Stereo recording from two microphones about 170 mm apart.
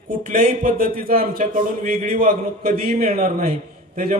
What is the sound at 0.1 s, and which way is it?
A man's voice, 50° right (ahead or behind).